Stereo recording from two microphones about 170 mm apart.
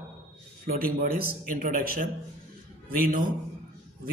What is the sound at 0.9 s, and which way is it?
Speech, 55° right (ahead or behind).